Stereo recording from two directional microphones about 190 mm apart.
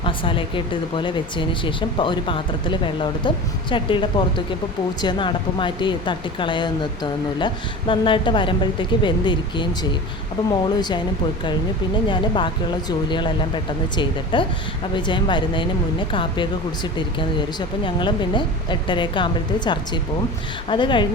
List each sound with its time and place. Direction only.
0.0 s speech: 25° left (ahead or behind)
12.0 s speech: 25° left (ahead or behind)